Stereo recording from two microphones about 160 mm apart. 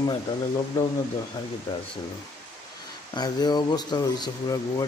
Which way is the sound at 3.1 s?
25° left (ahead or behind).